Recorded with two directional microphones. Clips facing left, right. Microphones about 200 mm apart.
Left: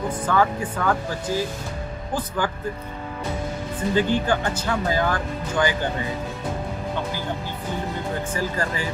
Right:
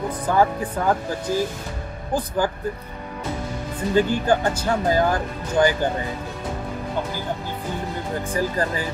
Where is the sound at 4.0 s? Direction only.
40° right (ahead or behind).